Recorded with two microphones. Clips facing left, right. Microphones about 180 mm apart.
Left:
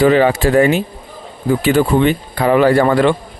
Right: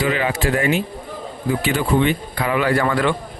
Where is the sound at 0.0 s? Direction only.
35° left (ahead or behind).